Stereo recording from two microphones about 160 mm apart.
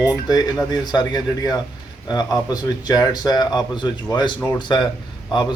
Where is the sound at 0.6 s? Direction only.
25° left (ahead or behind).